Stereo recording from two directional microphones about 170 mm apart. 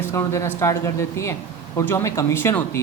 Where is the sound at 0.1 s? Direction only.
15° left (ahead or behind).